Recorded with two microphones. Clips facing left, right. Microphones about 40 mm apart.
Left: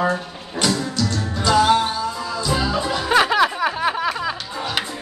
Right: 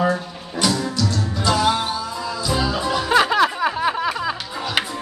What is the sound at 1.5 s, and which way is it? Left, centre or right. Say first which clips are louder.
Music: left 4 dB; left.